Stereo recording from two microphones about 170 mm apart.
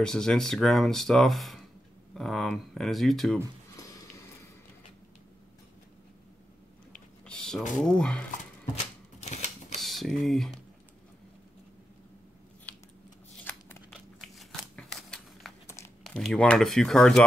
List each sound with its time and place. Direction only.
0.0 s speech: 5° left (ahead or behind)
3.7 s sniff: 20° left (ahead or behind)
7.2 s a sound: 5° left (ahead or behind)
7.7 s speech: 5° left (ahead or behind)
9.2 s camera: 40° left (ahead or behind)
9.8 s speech: centre (ahead or behind)
12.7 s a sound: 10° left (ahead or behind)
14.4 s scissors: centre (ahead or behind)
16.0 s speech: 5° left (ahead or behind)